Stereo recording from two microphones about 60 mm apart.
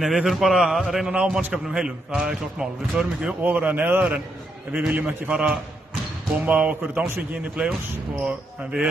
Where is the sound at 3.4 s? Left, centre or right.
Right.